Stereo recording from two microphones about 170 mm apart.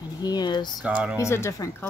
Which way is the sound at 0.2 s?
25° left (ahead or behind).